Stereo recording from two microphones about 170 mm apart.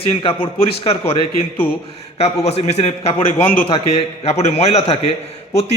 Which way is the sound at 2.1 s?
40° left (ahead or behind).